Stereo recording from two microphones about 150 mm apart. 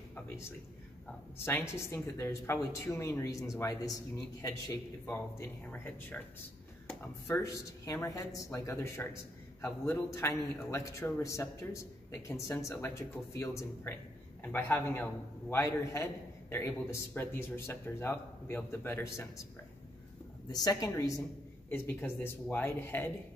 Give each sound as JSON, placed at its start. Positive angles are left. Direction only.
{"t": 1.4, "sound": "a man's voice", "side_deg": 15}
{"t": 20.5, "sound": "a man's voice", "side_deg": 25}